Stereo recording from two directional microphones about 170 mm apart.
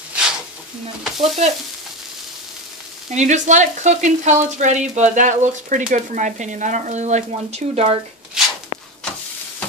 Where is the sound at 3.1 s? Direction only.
45° right (ahead or behind).